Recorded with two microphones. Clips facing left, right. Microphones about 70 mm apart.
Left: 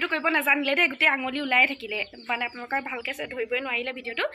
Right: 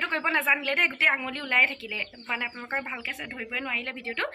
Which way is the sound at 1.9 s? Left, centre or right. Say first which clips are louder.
Left 3 dB; centre.